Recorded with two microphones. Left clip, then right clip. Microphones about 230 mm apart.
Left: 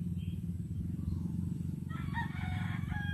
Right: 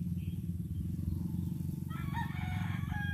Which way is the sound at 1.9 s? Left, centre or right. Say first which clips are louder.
Left 1 dB; right.